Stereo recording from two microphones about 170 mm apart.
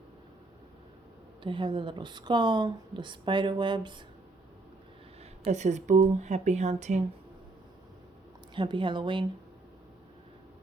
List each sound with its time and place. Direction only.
1.5 s speech: 30° right (ahead or behind)
5.5 s speech: 45° right (ahead or behind)
8.5 s speech: 30° right (ahead or behind)